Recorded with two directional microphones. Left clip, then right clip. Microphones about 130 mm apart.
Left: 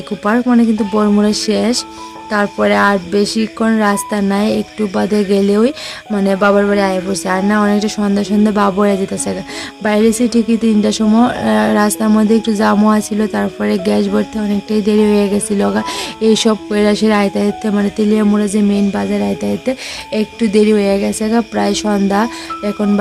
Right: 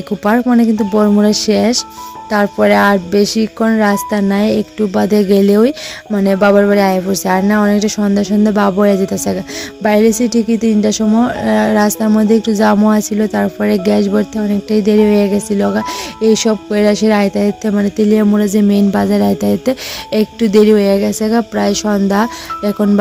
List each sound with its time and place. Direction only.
0.3 s a woman's voice: 30° right (ahead or behind)